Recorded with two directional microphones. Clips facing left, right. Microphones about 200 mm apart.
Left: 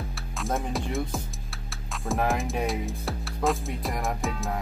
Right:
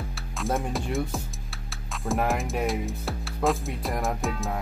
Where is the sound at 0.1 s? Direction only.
Centre (ahead or behind).